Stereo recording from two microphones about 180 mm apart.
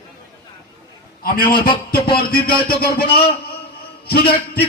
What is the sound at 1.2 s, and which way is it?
A man's voice, 55° left (ahead or behind).